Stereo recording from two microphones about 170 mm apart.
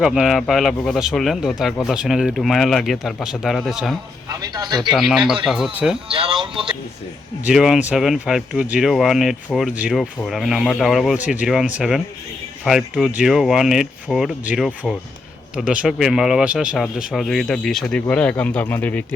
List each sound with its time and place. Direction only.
0.0 s speech: 5° right (ahead or behind)
4.3 s speech: 25° right (ahead or behind)
4.8 s speech: centre (ahead or behind)
6.1 s speech: 35° right (ahead or behind)
7.4 s speech: 5° right (ahead or behind)